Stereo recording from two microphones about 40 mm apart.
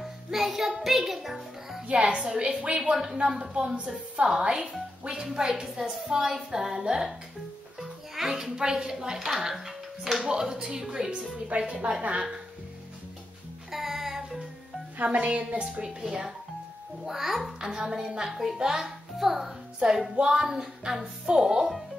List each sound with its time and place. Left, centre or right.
0.0 s child singing: centre
0.7 s a child's voice: centre
1.9 s a woman's voice: right
2.8 s a woman's voice: centre
7.8 s music: centre
8.4 s a woman's voice: centre
11.3 s speech: right
13.7 s music: centre
15.0 s speech: right
16.0 s a woman's voice: centre
17.0 s speech: centre
17.6 s speech: centre